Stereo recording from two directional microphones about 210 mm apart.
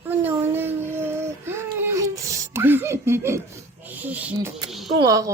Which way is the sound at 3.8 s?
10° right (ahead or behind).